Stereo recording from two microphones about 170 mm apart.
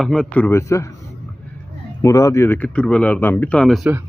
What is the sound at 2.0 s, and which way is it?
Speech, 20° left (ahead or behind).